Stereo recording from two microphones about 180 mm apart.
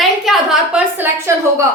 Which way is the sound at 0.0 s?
Centre (ahead or behind).